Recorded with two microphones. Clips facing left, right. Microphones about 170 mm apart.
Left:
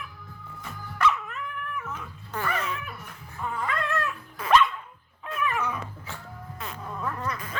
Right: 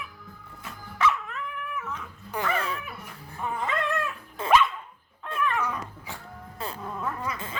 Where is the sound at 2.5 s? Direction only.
30° right (ahead or behind).